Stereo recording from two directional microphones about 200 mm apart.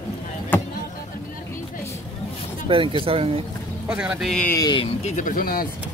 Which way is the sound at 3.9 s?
5° right (ahead or behind).